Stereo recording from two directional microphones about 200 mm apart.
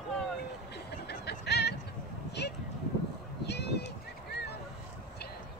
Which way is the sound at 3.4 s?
55° left (ahead or behind).